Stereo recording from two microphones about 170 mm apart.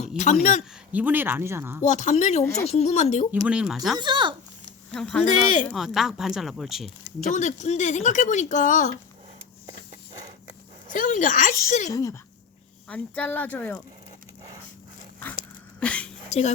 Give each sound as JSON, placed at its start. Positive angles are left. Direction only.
{"t": 0.2, "sound": "speech", "side_deg": 45}
{"t": 0.9, "sound": "speech", "side_deg": -10}
{"t": 1.8, "sound": "speech", "side_deg": 45}
{"t": 3.4, "sound": "speech", "side_deg": -5}
{"t": 3.9, "sound": "speech", "side_deg": -25}
{"t": 4.9, "sound": "speech", "side_deg": 5}
{"t": 5.2, "sound": "speech", "side_deg": 45}
{"t": 5.6, "sound": "speech", "side_deg": 0}
{"t": 7.2, "sound": "speech", "side_deg": 45}
{"t": 10.9, "sound": "speech", "side_deg": 50}
{"t": 11.9, "sound": "speech", "side_deg": 20}
{"t": 12.9, "sound": "speech", "side_deg": 10}
{"t": 15.8, "sound": "a sound", "side_deg": 5}